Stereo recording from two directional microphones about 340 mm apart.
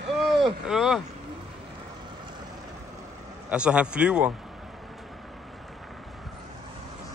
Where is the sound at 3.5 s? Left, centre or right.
Centre.